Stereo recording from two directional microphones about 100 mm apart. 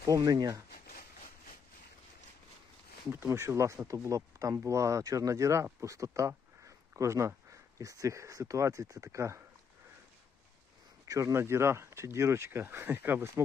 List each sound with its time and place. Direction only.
0.0 s speech: 35° right (ahead or behind)
3.1 s speech: 25° right (ahead or behind)
11.1 s speech: 30° right (ahead or behind)